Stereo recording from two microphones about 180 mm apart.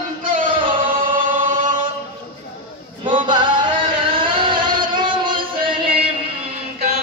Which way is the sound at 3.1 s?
25° right (ahead or behind).